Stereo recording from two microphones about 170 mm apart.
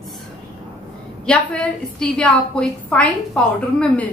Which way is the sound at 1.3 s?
5° left (ahead or behind).